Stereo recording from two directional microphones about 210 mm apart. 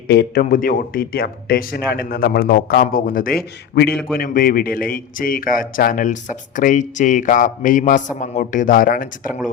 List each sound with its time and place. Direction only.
0.1 s a man's voice: 50° left (ahead or behind)